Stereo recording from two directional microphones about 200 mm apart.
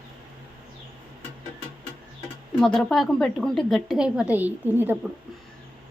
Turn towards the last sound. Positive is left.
turn(degrees=-10)  # may be behind; listen again after turning